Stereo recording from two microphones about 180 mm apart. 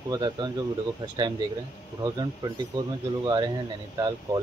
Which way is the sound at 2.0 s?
20° right (ahead or behind).